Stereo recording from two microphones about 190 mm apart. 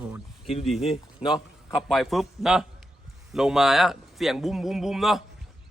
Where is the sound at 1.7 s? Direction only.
Centre (ahead or behind).